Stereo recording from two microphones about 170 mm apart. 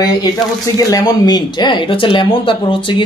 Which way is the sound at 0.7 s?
20° left (ahead or behind).